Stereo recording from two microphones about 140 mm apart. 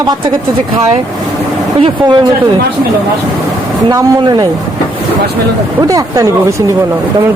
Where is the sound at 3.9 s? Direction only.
25° right (ahead or behind).